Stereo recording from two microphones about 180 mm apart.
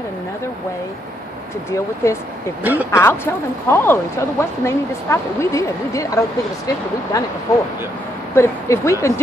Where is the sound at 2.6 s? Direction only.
10° right (ahead or behind).